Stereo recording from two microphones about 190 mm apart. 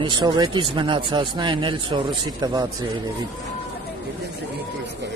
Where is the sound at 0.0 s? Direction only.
25° right (ahead or behind).